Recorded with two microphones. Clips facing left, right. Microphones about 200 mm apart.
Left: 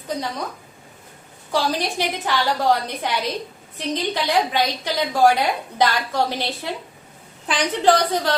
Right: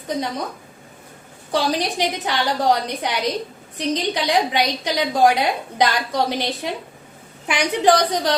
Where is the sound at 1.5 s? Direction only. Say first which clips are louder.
Right 1 dB; 20° right (ahead or behind).